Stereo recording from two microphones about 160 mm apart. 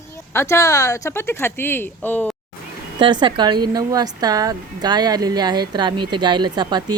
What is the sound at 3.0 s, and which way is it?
A woman's voice, 30° right (ahead or behind).